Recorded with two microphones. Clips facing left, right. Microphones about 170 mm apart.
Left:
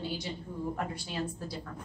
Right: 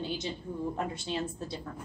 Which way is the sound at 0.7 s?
25° right (ahead or behind).